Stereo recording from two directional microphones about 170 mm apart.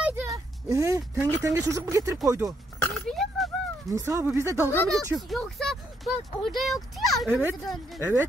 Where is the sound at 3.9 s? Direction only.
15° right (ahead or behind).